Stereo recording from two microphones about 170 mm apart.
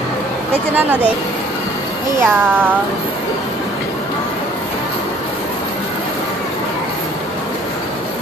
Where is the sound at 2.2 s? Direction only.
10° right (ahead or behind).